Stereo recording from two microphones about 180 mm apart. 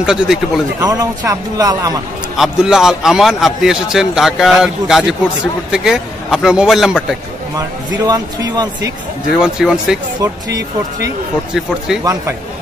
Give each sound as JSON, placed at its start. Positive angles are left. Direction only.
{"t": 0.0, "sound": "a man's voice", "side_deg": -5}
{"t": 0.7, "sound": "speech", "side_deg": -20}
{"t": 2.3, "sound": "a man's voice", "side_deg": -5}
{"t": 7.5, "sound": "speech", "side_deg": -20}
{"t": 9.3, "sound": "a man's voice", "side_deg": -5}
{"t": 10.2, "sound": "speech", "side_deg": -20}